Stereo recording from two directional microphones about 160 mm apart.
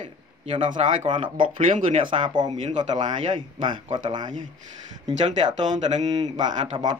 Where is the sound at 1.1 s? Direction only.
30° right (ahead or behind).